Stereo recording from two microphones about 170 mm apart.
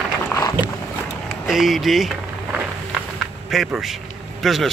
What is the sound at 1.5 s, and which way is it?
Speech, centre (ahead or behind).